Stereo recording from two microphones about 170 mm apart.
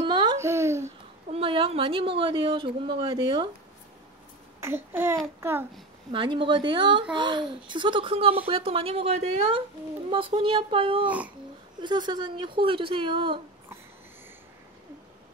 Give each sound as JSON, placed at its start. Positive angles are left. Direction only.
{"t": 0.1, "sound": "babbling", "side_deg": -25}
{"t": 0.8, "sound": "a woman's voice", "side_deg": -35}
{"t": 4.6, "sound": "a child's voice", "side_deg": -15}
{"t": 6.1, "sound": "a woman's voice", "side_deg": -30}
{"t": 11.1, "sound": "a child's voice", "side_deg": -10}
{"t": 11.8, "sound": "a woman's voice", "side_deg": -25}